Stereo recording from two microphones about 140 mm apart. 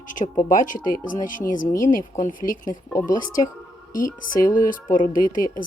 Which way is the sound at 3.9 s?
85° left.